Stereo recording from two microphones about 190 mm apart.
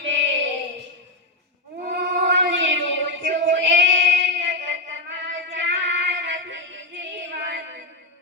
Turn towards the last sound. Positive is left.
turn(degrees=-70)  # may be behind; listen again after turning